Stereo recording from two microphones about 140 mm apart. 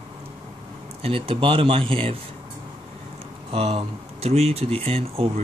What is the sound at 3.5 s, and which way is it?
Speech, 50° right (ahead or behind).